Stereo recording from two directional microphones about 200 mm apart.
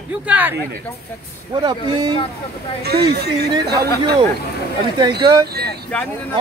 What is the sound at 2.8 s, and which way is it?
Speech, 55° right (ahead or behind).